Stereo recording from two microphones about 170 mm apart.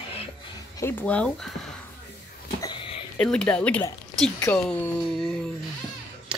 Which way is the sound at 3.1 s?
5° left (ahead or behind).